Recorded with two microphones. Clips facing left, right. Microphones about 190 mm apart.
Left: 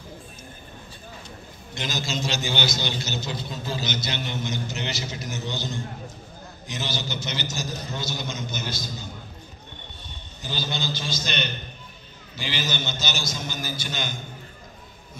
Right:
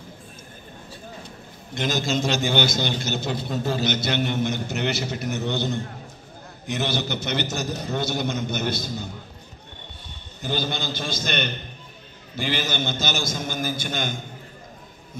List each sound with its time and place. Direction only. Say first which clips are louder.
1.8 s a man's voice: right 6 dB; 55° right (ahead or behind)
10.4 s a man's voice: right 3 dB; 55° right (ahead or behind)